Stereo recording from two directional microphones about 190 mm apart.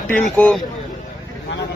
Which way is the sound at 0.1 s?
5° left (ahead or behind).